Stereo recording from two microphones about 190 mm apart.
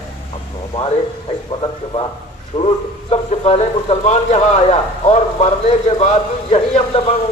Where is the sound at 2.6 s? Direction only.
35° left (ahead or behind).